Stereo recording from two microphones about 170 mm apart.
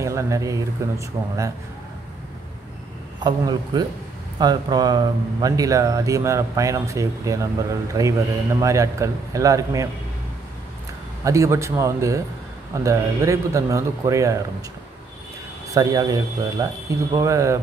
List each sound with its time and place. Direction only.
0.0 s speech: 15° right (ahead or behind)
3.2 s speech: 25° right (ahead or behind)
11.2 s speech: 15° right (ahead or behind)
15.7 s speech: 20° right (ahead or behind)